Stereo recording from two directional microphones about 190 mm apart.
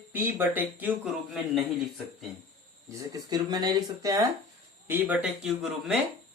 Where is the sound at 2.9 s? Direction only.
20° right (ahead or behind).